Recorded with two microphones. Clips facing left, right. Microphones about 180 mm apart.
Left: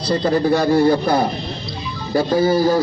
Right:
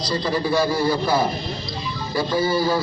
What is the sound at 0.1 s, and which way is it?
A man's voice, 55° left (ahead or behind).